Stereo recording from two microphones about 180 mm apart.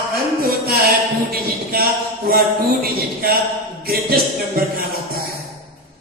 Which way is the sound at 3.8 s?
55° right (ahead or behind).